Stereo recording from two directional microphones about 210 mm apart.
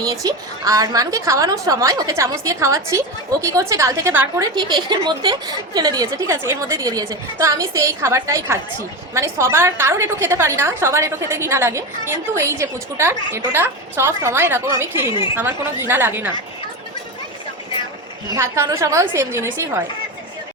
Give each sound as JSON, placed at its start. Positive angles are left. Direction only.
{"t": 0.0, "sound": "a woman's voice", "side_deg": -15}
{"t": 18.3, "sound": "a woman's voice", "side_deg": -15}